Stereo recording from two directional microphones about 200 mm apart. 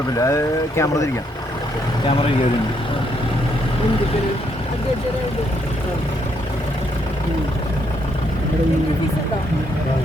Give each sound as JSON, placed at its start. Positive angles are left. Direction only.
{"t": 0.2, "sound": "speech", "side_deg": 15}